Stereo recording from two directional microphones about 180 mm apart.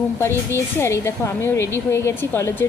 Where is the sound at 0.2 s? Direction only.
15° left (ahead or behind).